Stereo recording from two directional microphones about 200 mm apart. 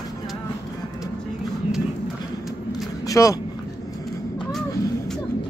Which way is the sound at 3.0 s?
15° left (ahead or behind).